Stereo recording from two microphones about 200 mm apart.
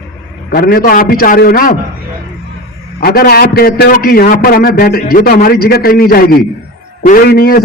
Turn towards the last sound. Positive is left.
turn(degrees=50)  # may be behind; listen again after turning